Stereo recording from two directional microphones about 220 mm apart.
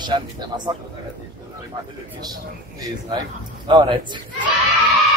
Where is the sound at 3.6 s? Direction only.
20° right (ahead or behind).